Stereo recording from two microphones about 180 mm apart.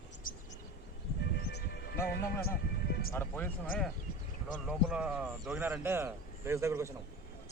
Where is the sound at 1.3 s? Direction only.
60° left (ahead or behind).